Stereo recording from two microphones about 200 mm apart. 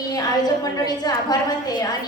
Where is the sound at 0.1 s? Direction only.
20° left (ahead or behind).